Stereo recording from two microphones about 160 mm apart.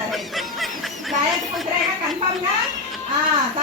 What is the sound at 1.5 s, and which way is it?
Speech, centre (ahead or behind).